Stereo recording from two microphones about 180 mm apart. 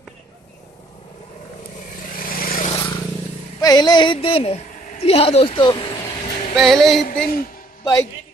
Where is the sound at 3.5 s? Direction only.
20° left (ahead or behind).